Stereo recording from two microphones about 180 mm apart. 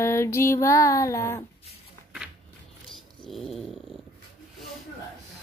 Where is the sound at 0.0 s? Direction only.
15° left (ahead or behind).